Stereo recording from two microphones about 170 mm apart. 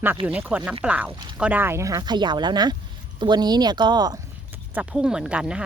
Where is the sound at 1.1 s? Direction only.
25° right (ahead or behind).